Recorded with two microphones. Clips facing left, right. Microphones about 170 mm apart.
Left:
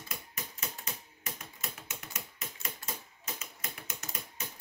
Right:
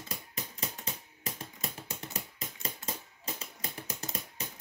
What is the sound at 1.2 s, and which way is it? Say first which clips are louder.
Finger snapping: right 5 dB; 30° right (ahead or behind).